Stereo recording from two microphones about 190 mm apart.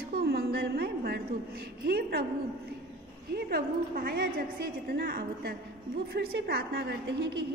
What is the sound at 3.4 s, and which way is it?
A woman's voice, 50° right (ahead or behind).